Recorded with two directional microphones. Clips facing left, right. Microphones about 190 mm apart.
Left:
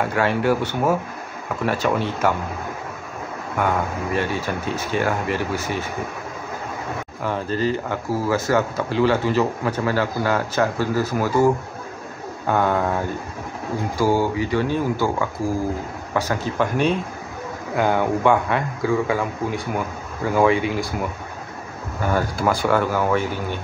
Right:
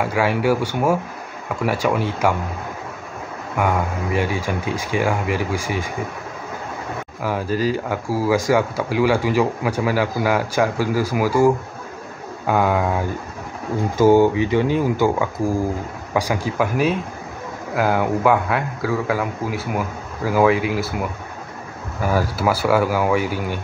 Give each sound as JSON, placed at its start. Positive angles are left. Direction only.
{"t": 0.0, "sound": "speech", "side_deg": -10}
{"t": 3.5, "sound": "speech", "side_deg": -10}
{"t": 7.2, "sound": "speech", "side_deg": -10}
{"t": 13.9, "sound": "a man's voice", "side_deg": -20}